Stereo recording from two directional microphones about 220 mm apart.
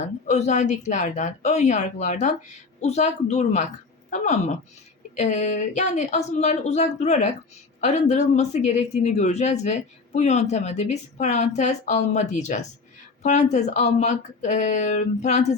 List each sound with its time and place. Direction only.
0.3 s speech: 30° left (ahead or behind)